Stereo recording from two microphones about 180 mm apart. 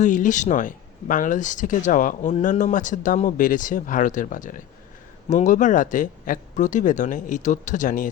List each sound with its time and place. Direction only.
0.0 s speech: 45° left (ahead or behind)